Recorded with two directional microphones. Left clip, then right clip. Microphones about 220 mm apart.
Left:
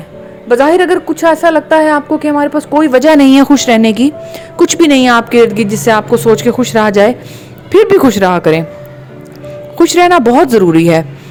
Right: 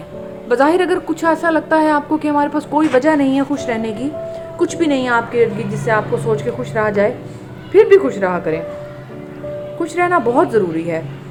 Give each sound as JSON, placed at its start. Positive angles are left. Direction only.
{"t": 0.4, "sound": "a woman's voice", "side_deg": 15}
{"t": 3.0, "sound": "a woman's voice", "side_deg": 45}
{"t": 9.7, "sound": "a woman's voice", "side_deg": 40}